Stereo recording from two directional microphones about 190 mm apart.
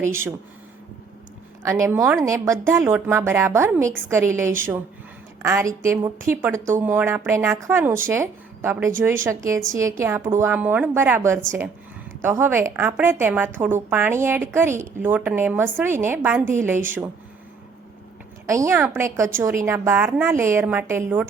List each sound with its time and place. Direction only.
0.0 s a woman's voice: 15° right (ahead or behind)
1.6 s a woman's voice: 15° right (ahead or behind)
18.5 s a woman's voice: 15° right (ahead or behind)